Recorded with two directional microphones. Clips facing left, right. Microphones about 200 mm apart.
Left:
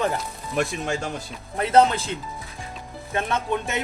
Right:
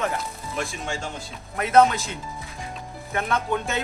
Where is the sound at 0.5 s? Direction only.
65° left (ahead or behind).